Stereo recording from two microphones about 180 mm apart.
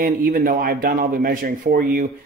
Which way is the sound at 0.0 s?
50° right (ahead or behind).